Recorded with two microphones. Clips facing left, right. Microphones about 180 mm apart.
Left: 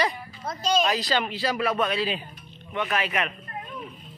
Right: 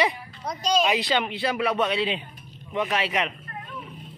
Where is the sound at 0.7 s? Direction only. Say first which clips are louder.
Right 1 dB; 10° right (ahead or behind).